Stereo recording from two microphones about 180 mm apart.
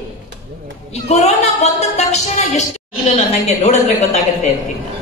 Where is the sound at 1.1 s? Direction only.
35° left (ahead or behind).